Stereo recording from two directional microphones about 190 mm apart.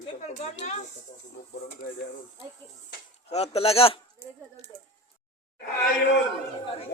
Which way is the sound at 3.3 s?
30° left (ahead or behind).